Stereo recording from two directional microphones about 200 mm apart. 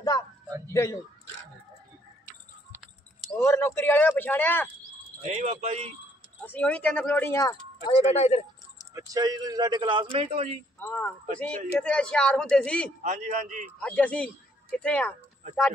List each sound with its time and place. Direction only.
2.7 s a sound: centre (ahead or behind)
3.3 s speech: 10° left (ahead or behind)
5.2 s a man's voice: 35° right (ahead or behind)
6.4 s speech: 10° left (ahead or behind)
7.9 s speech: 30° left (ahead or behind)
8.9 s a man's voice: 20° right (ahead or behind)
10.8 s a man's voice: 10° left (ahead or behind)
13.0 s a man's voice: 35° right (ahead or behind)
13.7 s speech: 5° left (ahead or behind)